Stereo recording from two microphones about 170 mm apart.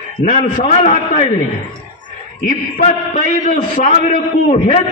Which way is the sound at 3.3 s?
45° left (ahead or behind).